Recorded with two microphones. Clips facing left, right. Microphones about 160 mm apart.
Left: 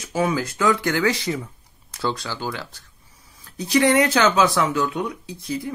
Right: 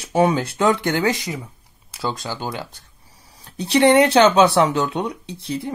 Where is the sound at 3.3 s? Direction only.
30° right (ahead or behind).